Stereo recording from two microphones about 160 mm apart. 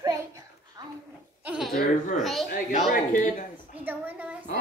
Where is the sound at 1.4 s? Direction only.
10° right (ahead or behind).